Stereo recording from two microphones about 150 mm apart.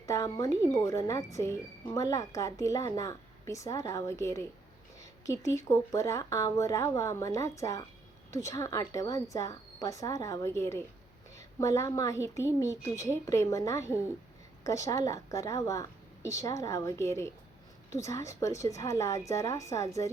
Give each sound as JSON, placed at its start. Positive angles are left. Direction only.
{"t": 0.0, "sound": "a woman's voice", "side_deg": 20}